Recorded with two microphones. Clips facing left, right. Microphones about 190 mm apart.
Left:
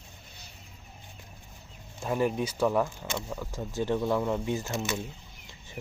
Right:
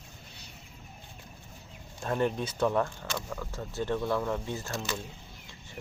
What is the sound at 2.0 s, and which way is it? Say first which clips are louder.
Speech: left 2 dB; 5° left (ahead or behind).